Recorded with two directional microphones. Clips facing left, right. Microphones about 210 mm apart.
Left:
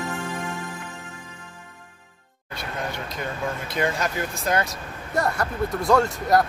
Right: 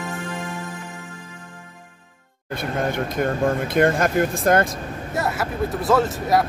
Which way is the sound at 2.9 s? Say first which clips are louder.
Right 9 dB; 50° right (ahead or behind).